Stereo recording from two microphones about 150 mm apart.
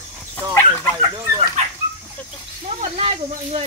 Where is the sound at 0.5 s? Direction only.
15° left (ahead or behind).